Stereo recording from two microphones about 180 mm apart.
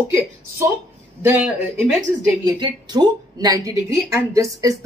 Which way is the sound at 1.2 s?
10° right (ahead or behind).